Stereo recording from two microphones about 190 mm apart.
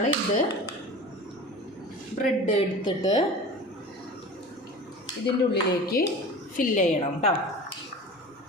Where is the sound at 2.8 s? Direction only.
25° left (ahead or behind).